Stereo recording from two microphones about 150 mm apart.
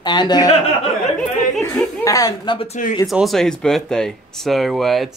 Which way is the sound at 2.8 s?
60° left (ahead or behind).